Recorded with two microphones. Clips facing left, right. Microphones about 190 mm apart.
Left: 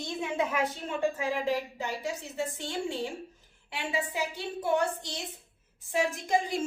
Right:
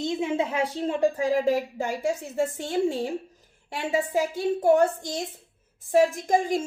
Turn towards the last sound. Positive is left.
turn(degrees=-45)  # may be behind; listen again after turning